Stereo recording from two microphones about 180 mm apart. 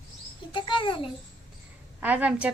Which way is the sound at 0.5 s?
25° left (ahead or behind).